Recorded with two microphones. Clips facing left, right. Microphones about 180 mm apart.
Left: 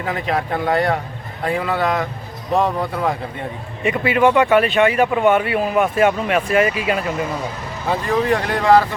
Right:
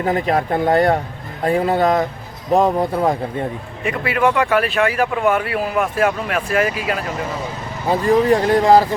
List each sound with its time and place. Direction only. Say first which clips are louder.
0.0 s speech: right 4 dB; 40° right (ahead or behind)
3.8 s speech: left 2 dB; centre (ahead or behind)
8.3 s speech: right 1 dB; 35° right (ahead or behind)